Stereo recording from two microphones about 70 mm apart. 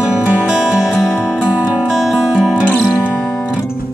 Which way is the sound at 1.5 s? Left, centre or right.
Centre.